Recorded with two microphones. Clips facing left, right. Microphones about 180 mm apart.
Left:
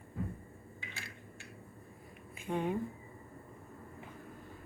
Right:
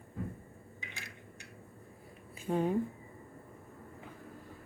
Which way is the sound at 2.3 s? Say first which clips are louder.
Right 3 dB; 40° right (ahead or behind).